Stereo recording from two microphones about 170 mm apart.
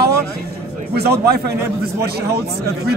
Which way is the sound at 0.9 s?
70° right (ahead or behind).